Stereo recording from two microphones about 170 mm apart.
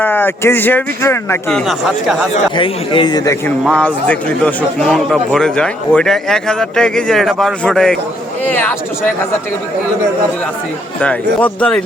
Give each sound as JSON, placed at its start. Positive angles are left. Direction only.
{"t": 0.0, "sound": "speech", "side_deg": 10}
{"t": 1.5, "sound": "a man's voice", "side_deg": 0}
{"t": 2.6, "sound": "a man's voice", "side_deg": 30}
{"t": 3.6, "sound": "a man's voice", "side_deg": 5}
{"t": 11.0, "sound": "speech", "side_deg": 10}